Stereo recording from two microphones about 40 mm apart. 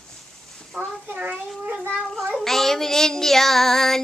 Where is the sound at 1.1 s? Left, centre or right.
Right.